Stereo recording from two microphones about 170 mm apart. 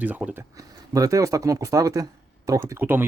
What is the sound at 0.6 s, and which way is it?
Speech, 20° right (ahead or behind).